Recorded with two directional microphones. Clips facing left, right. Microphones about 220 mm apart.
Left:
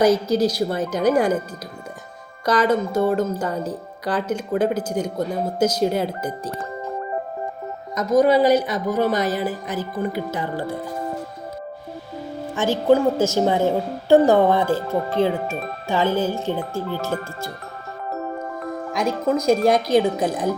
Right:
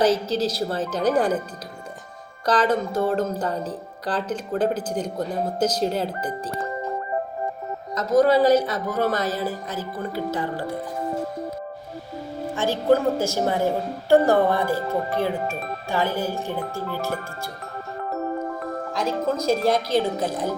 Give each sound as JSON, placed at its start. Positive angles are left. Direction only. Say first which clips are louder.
{"t": 0.0, "sound": "speech", "louder": "left 4 dB", "side_deg": 15}
{"t": 2.5, "sound": "speech", "louder": "left 2 dB", "side_deg": 10}
{"t": 7.9, "sound": "speech", "louder": "left 1 dB", "side_deg": 15}
{"t": 12.7, "sound": "a woman's voice", "louder": "left 3 dB", "side_deg": 20}
{"t": 18.9, "sound": "speech", "louder": "left 3 dB", "side_deg": 15}